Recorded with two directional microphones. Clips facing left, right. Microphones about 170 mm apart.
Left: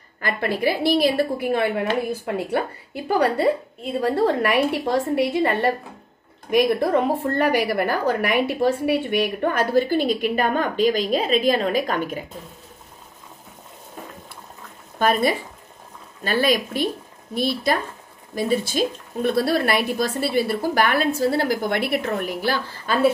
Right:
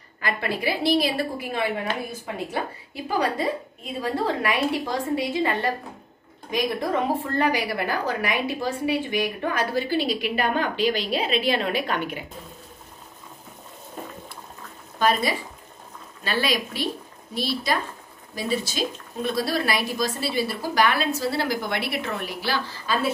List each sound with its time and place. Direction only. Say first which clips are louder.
0.2 s a woman's voice: left 4 dB; 50° left (ahead or behind)
15.0 s a woman's voice: left 3 dB; 55° left (ahead or behind)